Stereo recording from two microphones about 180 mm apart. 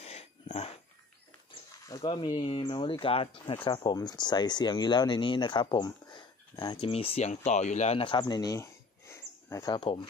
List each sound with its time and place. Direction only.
0.0 s dog: 35° left (ahead or behind)
1.9 s speech: 25° left (ahead or behind)